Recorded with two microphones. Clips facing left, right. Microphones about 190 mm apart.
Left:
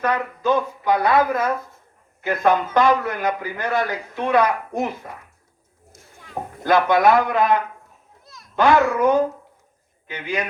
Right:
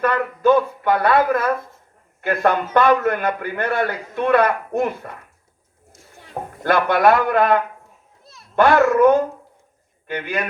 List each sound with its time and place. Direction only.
0.0 s a man's voice: 55° right (ahead or behind)
6.6 s a man's voice: 55° right (ahead or behind)
8.3 s children playing: 30° right (ahead or behind)
8.5 s a child's voice: 55° right (ahead or behind)